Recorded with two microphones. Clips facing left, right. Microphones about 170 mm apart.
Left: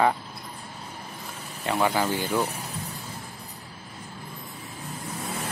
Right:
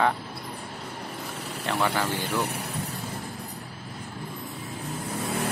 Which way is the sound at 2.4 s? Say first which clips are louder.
Even; 70° right (ahead or behind).